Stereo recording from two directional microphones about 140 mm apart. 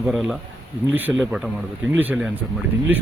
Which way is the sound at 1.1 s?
Centre (ahead or behind).